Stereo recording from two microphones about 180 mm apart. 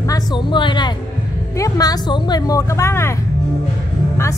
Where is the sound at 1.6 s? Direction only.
20° left (ahead or behind).